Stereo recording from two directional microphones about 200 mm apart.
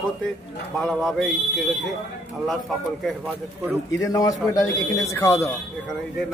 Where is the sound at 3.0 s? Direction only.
5° right (ahead or behind).